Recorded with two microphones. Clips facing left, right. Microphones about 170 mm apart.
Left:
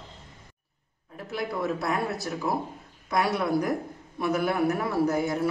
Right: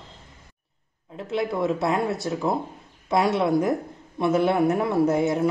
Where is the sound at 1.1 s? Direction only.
25° right (ahead or behind).